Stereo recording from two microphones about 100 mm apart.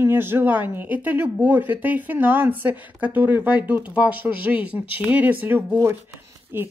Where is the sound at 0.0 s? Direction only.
20° right (ahead or behind).